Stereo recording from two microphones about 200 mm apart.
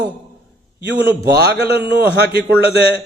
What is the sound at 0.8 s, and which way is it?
A man's voice, 55° right (ahead or behind).